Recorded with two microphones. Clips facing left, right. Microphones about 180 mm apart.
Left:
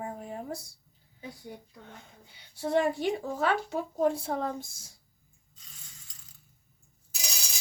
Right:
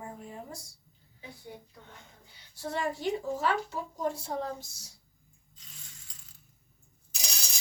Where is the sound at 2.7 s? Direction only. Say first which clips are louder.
Left 5 dB; 65° left (ahead or behind).